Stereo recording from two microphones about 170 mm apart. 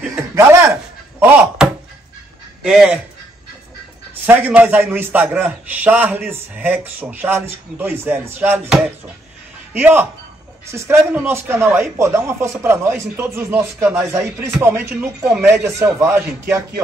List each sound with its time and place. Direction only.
0.3 s a man's voice: 15° right (ahead or behind)
4.3 s a man's voice: 10° right (ahead or behind)